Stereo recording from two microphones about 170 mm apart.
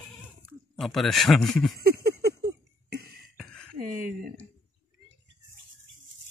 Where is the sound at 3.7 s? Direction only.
55° right (ahead or behind).